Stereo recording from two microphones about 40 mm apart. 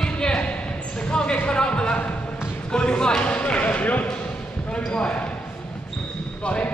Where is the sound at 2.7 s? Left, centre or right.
Left.